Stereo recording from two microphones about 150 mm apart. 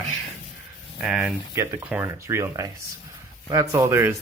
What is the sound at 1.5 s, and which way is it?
Speech, 20° right (ahead or behind).